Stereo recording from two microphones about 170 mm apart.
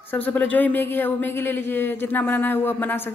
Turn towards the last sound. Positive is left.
turn(degrees=10)  # may be behind; listen again after turning